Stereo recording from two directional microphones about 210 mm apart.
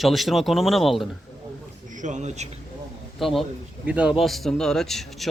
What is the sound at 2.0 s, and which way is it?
Speech, 35° right (ahead or behind).